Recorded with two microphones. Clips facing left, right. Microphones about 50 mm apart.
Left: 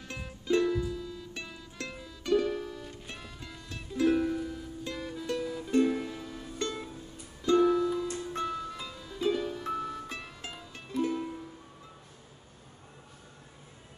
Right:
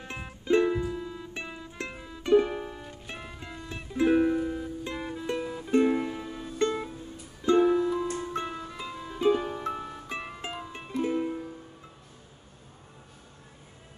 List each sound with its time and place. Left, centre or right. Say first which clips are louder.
0.0 s music: right 3 dB; right